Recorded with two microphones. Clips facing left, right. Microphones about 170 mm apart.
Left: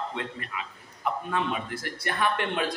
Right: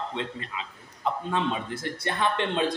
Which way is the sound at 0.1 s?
25° right (ahead or behind).